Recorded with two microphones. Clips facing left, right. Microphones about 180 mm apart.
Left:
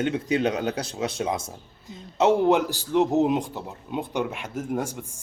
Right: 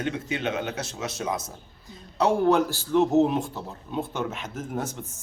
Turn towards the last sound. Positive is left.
turn(degrees=10)  # may be behind; listen again after turning